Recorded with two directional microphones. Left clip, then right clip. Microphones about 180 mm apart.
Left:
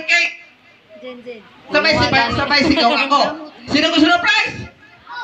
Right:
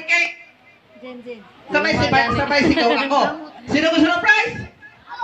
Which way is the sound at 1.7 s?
10° right (ahead or behind).